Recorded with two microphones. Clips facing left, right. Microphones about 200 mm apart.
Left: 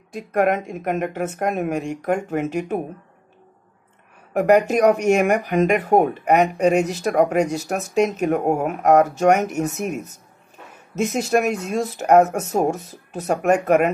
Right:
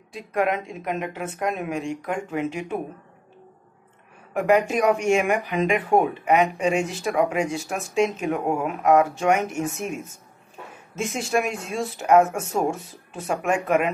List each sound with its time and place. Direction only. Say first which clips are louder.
0.1 s a woman's voice: left 4 dB; 45° left (ahead or behind)
4.3 s speech: left 4 dB; 45° left (ahead or behind)